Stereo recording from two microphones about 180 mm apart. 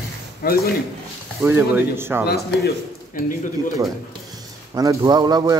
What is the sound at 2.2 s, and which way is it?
Speech, 60° left (ahead or behind).